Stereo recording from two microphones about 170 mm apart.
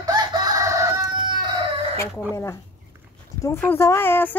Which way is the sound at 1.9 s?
15° left (ahead or behind).